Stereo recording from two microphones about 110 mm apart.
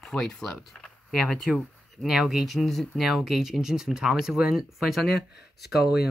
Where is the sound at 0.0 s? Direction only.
5° left (ahead or behind).